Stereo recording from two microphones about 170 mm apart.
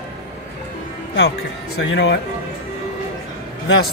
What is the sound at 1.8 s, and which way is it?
Speech, 90° left.